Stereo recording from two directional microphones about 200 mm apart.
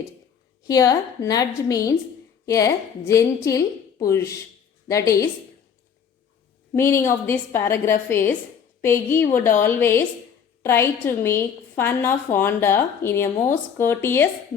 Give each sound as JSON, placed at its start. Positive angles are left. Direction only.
{"t": 0.7, "sound": "a woman's voice", "side_deg": 15}
{"t": 6.7, "sound": "a woman's voice", "side_deg": 10}